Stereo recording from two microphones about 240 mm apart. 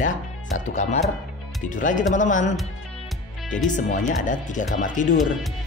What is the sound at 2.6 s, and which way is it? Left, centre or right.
Music, centre.